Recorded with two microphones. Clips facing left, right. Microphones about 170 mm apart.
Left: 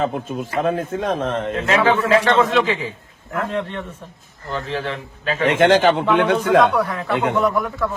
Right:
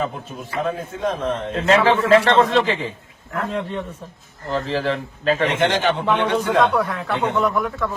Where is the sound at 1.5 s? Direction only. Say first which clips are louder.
Right 2 dB; 30° right (ahead or behind).